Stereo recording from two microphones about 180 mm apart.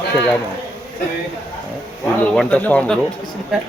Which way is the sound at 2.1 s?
5° left (ahead or behind).